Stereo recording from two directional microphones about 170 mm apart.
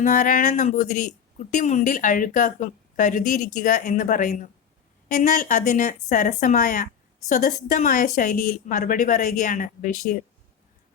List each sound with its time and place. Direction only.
0.0 s speech: 50° left (ahead or behind)